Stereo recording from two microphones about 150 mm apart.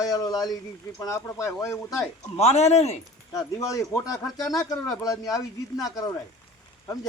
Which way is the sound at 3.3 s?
20° left (ahead or behind).